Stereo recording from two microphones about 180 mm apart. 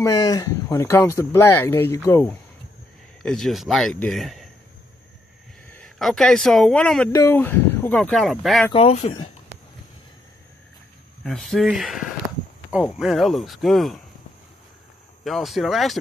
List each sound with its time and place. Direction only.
0.0 s speech: 20° left (ahead or behind)
3.2 s speech: centre (ahead or behind)
5.7 s speech: 5° left (ahead or behind)
7.1 s speech: 15° left (ahead or behind); by 8.6 s centre (ahead or behind)
8.7 s speech: 35° left (ahead or behind)
11.2 s speech: centre (ahead or behind)
15.2 s speech: centre (ahead or behind)